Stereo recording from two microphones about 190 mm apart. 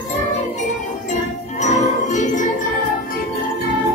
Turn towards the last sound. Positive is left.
turn(degrees=40)  # may be behind; listen again after turning